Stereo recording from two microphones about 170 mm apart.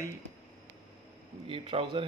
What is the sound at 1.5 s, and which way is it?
Speech, 30° right (ahead or behind).